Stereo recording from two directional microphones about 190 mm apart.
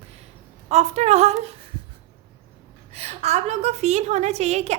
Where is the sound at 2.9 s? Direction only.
35° right (ahead or behind).